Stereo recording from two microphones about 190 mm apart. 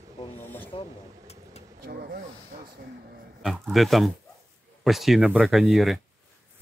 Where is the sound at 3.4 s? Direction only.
Centre (ahead or behind).